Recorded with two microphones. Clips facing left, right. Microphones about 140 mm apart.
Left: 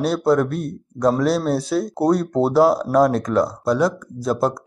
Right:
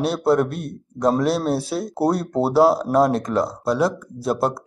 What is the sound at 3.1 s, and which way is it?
Speech, centre (ahead or behind).